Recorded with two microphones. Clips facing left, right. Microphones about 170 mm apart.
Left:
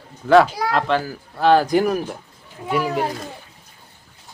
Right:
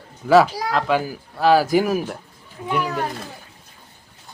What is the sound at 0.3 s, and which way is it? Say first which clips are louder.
Speech: left 1 dB; centre (ahead or behind).